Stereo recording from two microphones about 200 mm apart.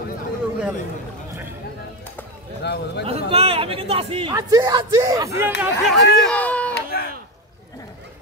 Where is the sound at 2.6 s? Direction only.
55° left (ahead or behind).